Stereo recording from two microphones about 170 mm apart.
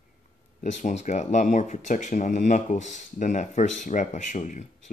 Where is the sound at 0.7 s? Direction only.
45° left (ahead or behind).